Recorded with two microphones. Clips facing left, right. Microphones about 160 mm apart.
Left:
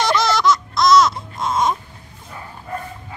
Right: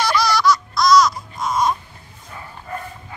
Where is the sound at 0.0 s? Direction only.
20° left (ahead or behind).